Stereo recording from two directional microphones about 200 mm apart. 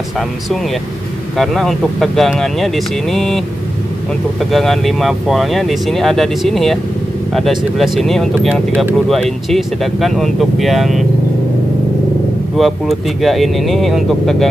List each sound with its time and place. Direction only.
1.4 s speech: centre (ahead or behind)
4.5 s speech: centre (ahead or behind)
12.5 s speech: centre (ahead or behind)